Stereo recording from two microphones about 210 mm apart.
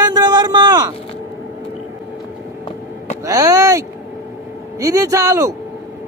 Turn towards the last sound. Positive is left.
turn(degrees=-15)  # may be behind; listen again after turning